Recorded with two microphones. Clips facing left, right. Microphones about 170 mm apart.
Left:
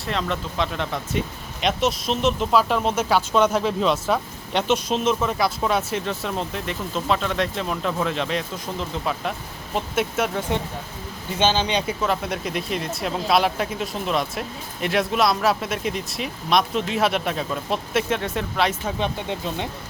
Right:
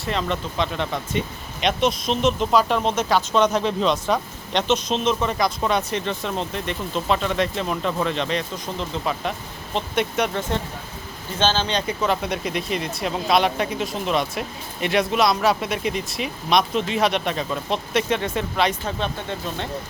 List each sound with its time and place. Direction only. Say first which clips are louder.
0.0 s speech: right 1 dB; centre (ahead or behind)
11.3 s speech: left 1 dB; 15° left (ahead or behind)
11.9 s speech: right 1 dB; centre (ahead or behind)
18.9 s speech: left 1 dB; 15° left (ahead or behind)